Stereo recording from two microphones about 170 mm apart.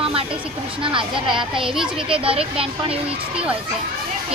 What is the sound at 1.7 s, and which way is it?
Speech, 5° right (ahead or behind).